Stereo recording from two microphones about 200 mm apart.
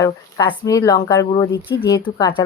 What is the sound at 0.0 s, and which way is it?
A woman's voice, 20° left (ahead or behind).